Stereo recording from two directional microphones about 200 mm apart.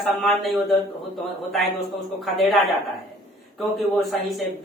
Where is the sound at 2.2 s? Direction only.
Centre (ahead or behind).